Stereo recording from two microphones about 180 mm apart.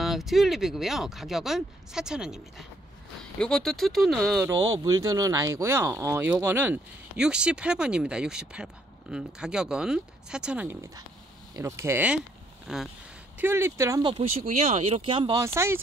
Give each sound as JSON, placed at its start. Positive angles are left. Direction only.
{"t": 0.0, "sound": "speech", "side_deg": 0}
{"t": 4.4, "sound": "speech", "side_deg": -20}
{"t": 13.4, "sound": "speech", "side_deg": -15}
{"t": 14.3, "sound": "speech", "side_deg": -40}
{"t": 15.4, "sound": "speech", "side_deg": -15}